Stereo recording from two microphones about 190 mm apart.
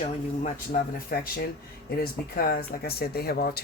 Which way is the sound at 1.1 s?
50° left (ahead or behind).